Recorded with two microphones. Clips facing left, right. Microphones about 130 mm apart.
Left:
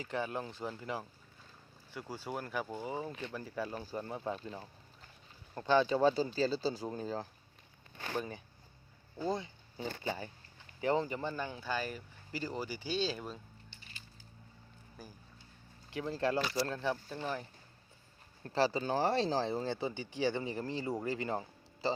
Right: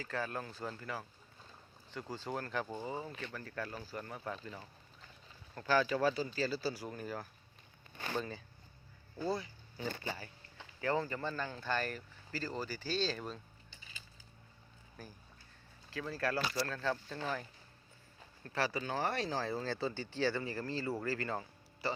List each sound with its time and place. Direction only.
0.0 s speech: 20° left (ahead or behind)
8.1 s speech: 15° left (ahead or behind)
15.0 s speech: 10° left (ahead or behind)
15.9 s speech: 25° left (ahead or behind)
18.4 s speech: 30° left (ahead or behind)